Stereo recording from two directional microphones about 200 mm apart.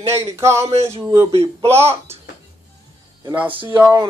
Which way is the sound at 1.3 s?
30° right (ahead or behind).